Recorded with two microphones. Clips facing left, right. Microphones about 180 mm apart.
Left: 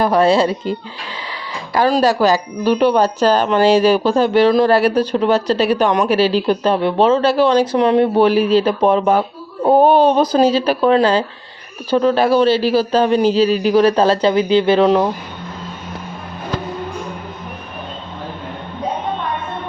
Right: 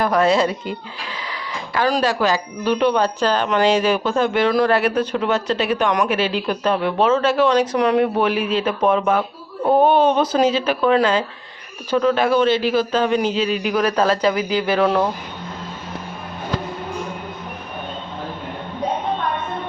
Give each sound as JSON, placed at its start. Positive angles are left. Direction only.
{"t": 0.0, "sound": "speech", "side_deg": 30}